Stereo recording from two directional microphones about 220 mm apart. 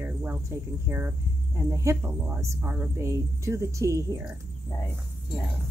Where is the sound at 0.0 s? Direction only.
10° right (ahead or behind).